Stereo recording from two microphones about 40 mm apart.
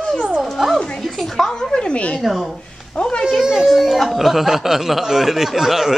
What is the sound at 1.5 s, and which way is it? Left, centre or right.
Speech, left.